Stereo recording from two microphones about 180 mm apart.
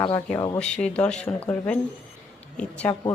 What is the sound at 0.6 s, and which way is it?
Speech, 5° left (ahead or behind).